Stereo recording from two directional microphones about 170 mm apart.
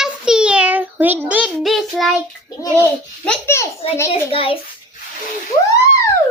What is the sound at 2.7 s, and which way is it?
A child's voice, 10° left (ahead or behind).